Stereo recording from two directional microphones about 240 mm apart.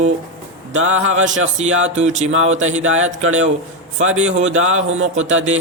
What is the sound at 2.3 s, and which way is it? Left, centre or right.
Speech, right.